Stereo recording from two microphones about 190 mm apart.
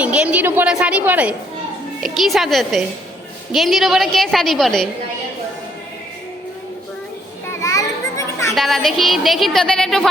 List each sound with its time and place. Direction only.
0.0 s a woman's voice: 5° right (ahead or behind)
7.6 s children playing: 15° left (ahead or behind)
8.5 s a woman's voice: centre (ahead or behind)